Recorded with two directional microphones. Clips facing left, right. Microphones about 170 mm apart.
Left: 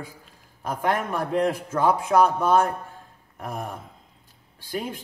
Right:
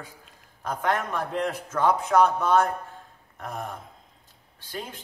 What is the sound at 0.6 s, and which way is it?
Speech, 10° left (ahead or behind).